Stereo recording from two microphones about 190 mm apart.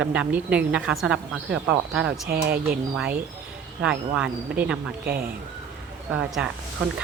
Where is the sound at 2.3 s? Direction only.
55° right (ahead or behind).